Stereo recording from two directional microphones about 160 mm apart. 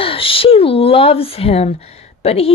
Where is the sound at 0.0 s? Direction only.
35° left (ahead or behind).